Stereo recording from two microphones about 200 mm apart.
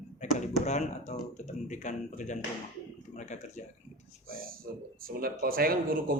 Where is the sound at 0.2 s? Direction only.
35° left (ahead or behind).